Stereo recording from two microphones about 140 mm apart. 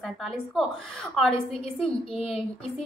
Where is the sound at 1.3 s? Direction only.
40° left (ahead or behind).